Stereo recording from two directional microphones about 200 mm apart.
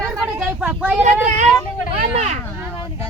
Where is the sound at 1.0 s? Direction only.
35° right (ahead or behind).